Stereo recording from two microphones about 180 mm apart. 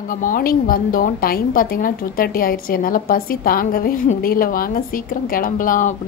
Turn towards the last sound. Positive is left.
turn(degrees=50)  # may be behind; listen again after turning